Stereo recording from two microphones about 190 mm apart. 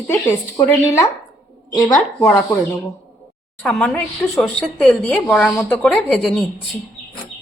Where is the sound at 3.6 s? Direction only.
5° left (ahead or behind).